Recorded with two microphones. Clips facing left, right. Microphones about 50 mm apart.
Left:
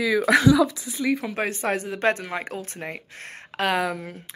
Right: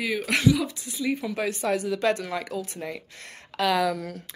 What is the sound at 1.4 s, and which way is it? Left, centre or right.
Speech, left.